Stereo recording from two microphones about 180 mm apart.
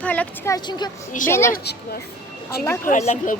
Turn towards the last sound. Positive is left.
turn(degrees=40)  # may be behind; listen again after turning